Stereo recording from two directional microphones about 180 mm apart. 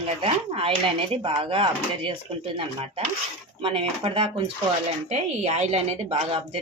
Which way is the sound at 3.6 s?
30° right (ahead or behind).